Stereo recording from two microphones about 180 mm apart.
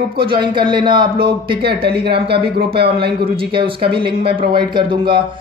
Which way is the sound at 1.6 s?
60° right (ahead or behind).